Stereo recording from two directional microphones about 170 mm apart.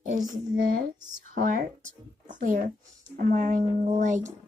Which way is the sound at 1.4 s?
50° right (ahead or behind).